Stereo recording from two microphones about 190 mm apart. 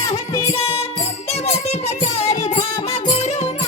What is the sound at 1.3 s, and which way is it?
Music, 35° left (ahead or behind).